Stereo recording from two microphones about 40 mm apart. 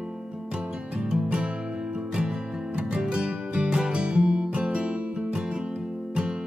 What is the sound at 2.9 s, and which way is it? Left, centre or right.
Music, right.